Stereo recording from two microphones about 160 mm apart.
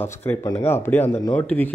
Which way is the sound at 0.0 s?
15° left (ahead or behind).